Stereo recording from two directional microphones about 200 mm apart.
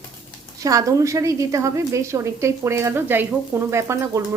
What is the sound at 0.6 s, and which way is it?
A woman's voice, 15° right (ahead or behind).